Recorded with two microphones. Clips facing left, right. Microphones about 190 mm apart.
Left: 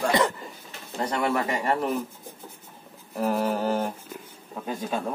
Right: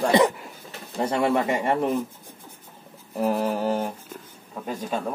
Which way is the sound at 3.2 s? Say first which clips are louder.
Right 1 dB; 10° right (ahead or behind).